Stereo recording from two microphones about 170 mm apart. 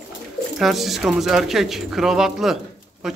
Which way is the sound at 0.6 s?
Centre (ahead or behind).